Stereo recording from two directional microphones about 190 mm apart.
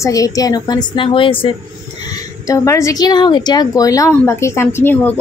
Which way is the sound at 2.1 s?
15° left (ahead or behind).